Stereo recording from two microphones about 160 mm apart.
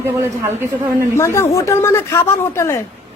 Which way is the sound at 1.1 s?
15° left (ahead or behind).